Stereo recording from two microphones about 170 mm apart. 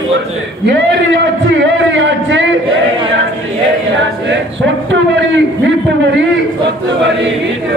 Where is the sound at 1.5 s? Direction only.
90° right.